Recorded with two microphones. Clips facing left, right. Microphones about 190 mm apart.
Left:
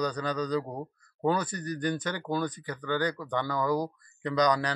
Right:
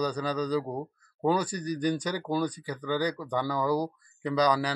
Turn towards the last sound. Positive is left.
turn(degrees=-10)  # may be behind; listen again after turning